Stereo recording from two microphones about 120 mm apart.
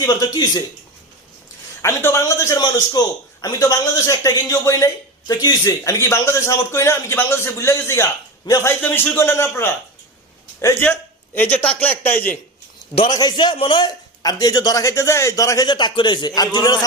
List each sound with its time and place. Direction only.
0.0 s a man's voice: 30° left (ahead or behind)
1.8 s a man's voice: 20° left (ahead or behind)
13.1 s a man's voice: 35° left (ahead or behind)